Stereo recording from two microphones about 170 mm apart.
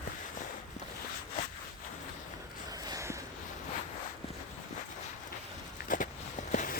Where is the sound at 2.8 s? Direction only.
20° right (ahead or behind).